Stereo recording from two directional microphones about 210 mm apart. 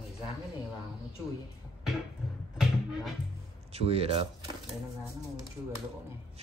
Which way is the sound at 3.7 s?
30° right (ahead or behind).